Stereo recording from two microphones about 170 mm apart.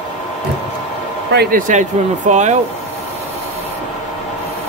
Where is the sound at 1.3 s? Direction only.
65° right (ahead or behind).